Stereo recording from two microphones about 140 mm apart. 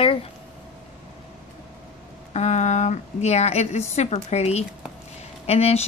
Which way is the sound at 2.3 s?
55° left (ahead or behind).